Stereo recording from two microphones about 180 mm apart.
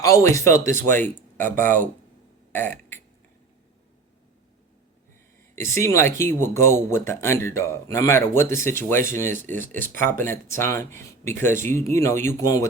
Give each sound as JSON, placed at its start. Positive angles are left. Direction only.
{"t": 0.0, "sound": "speech", "side_deg": 15}
{"t": 2.5, "sound": "burping", "side_deg": 10}
{"t": 5.5, "sound": "speech", "side_deg": 15}